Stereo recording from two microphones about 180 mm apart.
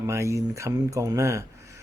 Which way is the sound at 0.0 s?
15° right (ahead or behind).